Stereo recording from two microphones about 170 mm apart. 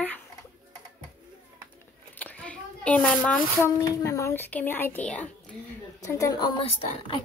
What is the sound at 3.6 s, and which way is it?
A woman's voice, 15° left (ahead or behind).